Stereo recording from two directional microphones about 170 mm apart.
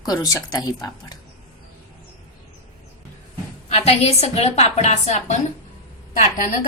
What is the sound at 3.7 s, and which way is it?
A woman's voice, 40° left (ahead or behind).